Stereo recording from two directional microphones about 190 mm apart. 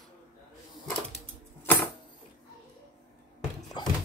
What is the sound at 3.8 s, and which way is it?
Dog, 25° left (ahead or behind).